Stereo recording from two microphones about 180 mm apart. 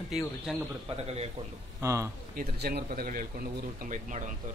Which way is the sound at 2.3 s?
55° right (ahead or behind).